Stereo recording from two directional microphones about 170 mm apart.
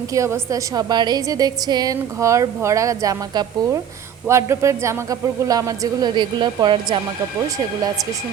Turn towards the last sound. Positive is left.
turn(degrees=-30)  # may be behind; listen again after turning